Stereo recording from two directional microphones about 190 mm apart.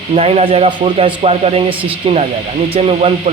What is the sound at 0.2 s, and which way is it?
Speech, 30° right (ahead or behind).